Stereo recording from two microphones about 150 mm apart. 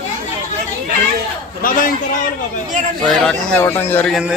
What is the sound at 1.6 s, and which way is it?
Speech, 70° left (ahead or behind).